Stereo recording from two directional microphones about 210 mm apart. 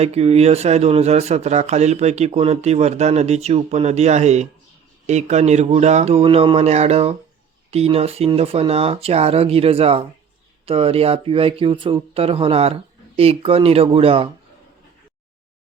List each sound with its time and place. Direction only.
0.0 s speech: 30° right (ahead or behind)